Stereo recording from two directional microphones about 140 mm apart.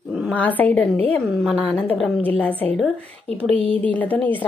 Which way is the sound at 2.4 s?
10° left (ahead or behind).